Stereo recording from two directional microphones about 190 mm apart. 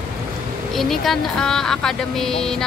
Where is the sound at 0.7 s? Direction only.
Centre (ahead or behind).